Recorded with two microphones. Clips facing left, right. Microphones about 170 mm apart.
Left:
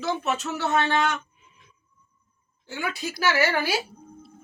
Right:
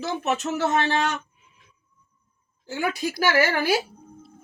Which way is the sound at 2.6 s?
45° right (ahead or behind).